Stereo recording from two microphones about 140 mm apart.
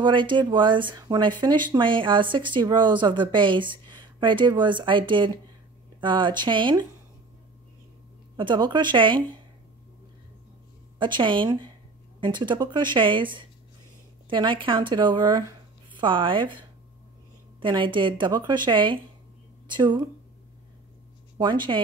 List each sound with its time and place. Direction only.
0.0 s a woman's voice: 35° right (ahead or behind)
3.9 s a sound: 35° right (ahead or behind)
4.5 s a woman's voice: 35° right (ahead or behind)
8.4 s a woman's voice: 35° right (ahead or behind)
11.0 s a woman's voice: 35° right (ahead or behind)
21.4 s a woman's voice: 35° right (ahead or behind)